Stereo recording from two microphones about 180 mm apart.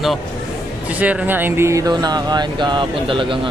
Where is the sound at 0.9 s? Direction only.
5° right (ahead or behind); by 3.5 s 30° right (ahead or behind).